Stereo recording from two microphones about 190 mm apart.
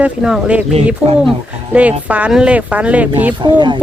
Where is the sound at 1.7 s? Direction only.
5° right (ahead or behind).